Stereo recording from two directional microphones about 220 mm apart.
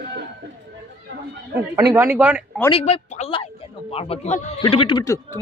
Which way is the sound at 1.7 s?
15° right (ahead or behind).